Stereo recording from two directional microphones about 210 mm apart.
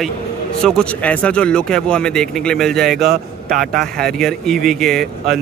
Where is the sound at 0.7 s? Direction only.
5° left (ahead or behind).